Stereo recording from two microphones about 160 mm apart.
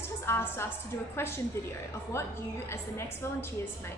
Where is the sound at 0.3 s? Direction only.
15° left (ahead or behind).